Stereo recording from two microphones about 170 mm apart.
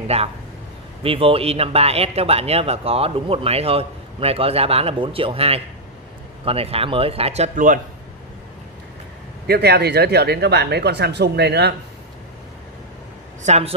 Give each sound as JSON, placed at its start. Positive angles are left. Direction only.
{"t": 0.1, "sound": "speech", "side_deg": -35}
{"t": 9.5, "sound": "speech", "side_deg": -70}
{"t": 13.5, "sound": "speech", "side_deg": -35}